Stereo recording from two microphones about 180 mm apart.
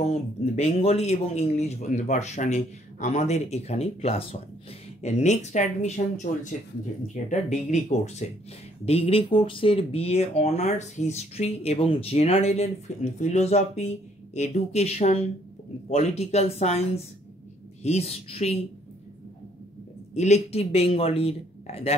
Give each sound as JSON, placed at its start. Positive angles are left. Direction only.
{"t": 0.0, "sound": "speech", "side_deg": 40}
{"t": 20.2, "sound": "speech", "side_deg": 40}